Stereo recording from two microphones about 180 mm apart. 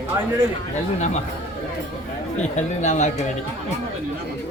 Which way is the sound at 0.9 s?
40° left (ahead or behind).